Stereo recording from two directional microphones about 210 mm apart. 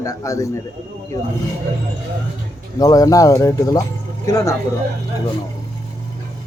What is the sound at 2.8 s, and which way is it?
Speech, 15° left (ahead or behind).